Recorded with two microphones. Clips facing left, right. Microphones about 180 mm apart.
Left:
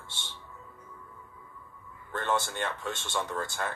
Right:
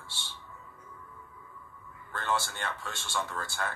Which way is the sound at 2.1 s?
20° left (ahead or behind).